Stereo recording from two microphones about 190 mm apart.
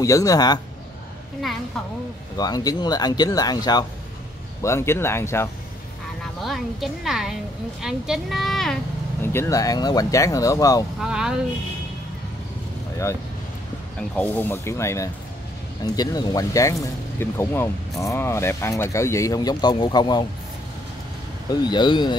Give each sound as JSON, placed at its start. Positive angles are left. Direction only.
{"t": 0.0, "sound": "speech", "side_deg": 20}
{"t": 2.3, "sound": "speech", "side_deg": 20}
{"t": 6.4, "sound": "a woman's voice", "side_deg": 0}
{"t": 9.2, "sound": "speech", "side_deg": 15}
{"t": 11.0, "sound": "a woman's voice", "side_deg": -5}
{"t": 13.9, "sound": "speech", "side_deg": 10}
{"t": 21.6, "sound": "speech", "side_deg": 25}